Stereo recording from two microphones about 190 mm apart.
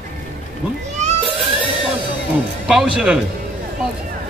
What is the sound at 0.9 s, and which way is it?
Cat, 35° right (ahead or behind).